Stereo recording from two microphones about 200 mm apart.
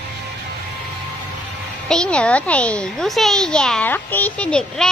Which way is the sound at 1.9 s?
5° left (ahead or behind).